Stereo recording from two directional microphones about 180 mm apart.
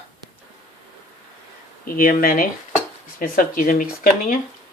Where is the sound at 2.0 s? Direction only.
50° left (ahead or behind).